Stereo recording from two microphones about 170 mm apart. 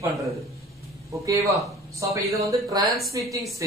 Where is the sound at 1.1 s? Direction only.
20° right (ahead or behind).